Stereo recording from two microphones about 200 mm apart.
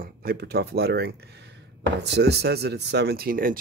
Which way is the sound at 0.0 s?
50° right (ahead or behind).